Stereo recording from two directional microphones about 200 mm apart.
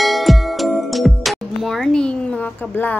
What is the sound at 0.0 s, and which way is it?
Music, centre (ahead or behind).